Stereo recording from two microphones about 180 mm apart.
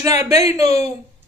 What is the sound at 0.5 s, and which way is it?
Speech, 20° right (ahead or behind).